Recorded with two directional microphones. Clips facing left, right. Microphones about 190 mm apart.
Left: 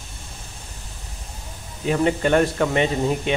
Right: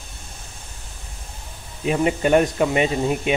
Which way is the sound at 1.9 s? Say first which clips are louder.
Right 1 dB; 15° right (ahead or behind).